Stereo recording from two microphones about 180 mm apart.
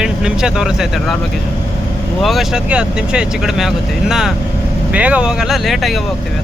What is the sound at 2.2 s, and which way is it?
Speech, centre (ahead or behind).